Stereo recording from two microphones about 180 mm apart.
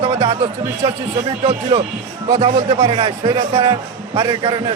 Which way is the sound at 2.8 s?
30° right (ahead or behind).